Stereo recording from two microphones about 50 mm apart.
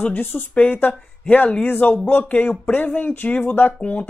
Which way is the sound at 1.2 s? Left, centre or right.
Left.